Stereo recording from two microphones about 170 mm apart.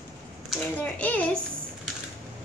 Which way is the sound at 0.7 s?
10° left (ahead or behind).